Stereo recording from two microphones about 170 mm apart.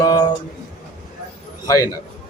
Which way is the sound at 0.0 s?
20° left (ahead or behind).